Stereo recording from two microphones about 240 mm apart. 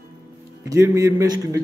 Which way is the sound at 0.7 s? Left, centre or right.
Centre.